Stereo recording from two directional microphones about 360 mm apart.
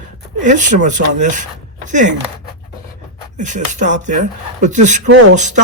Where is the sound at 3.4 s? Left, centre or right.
Centre.